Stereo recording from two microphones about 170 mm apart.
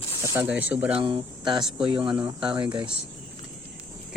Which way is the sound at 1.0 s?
30° right (ahead or behind).